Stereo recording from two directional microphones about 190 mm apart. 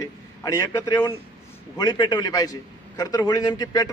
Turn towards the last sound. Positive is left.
turn(degrees=20)  # may be behind; listen again after turning